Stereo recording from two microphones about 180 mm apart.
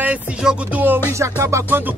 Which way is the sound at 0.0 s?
5° right (ahead or behind).